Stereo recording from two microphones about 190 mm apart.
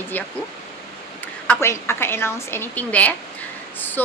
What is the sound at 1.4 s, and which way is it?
Speech, 10° left (ahead or behind).